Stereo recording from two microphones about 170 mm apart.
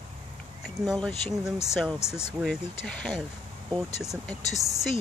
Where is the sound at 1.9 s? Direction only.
15° left (ahead or behind).